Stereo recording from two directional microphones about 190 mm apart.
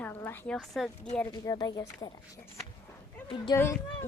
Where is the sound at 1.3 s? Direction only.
20° left (ahead or behind).